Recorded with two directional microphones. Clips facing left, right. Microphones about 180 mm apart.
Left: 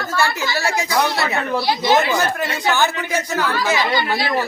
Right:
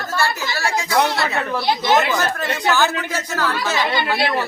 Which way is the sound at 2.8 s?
15° left (ahead or behind).